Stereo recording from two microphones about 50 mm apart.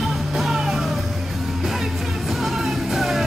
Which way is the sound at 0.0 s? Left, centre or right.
Centre.